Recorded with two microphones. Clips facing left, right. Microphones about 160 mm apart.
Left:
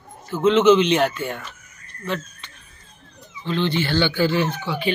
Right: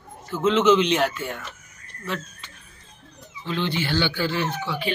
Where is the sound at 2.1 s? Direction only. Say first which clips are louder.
Left 3 dB; 5° right (ahead or behind).